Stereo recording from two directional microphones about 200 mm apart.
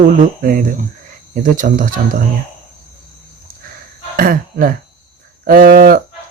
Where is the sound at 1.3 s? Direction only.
40° right (ahead or behind).